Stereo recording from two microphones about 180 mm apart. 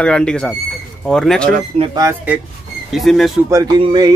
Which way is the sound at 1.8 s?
25° right (ahead or behind).